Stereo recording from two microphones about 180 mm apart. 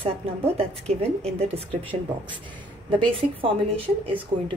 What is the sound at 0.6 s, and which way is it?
Speech, 35° right (ahead or behind).